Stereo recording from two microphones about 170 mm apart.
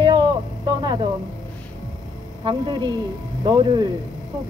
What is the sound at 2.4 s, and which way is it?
A man's voice, 30° right (ahead or behind).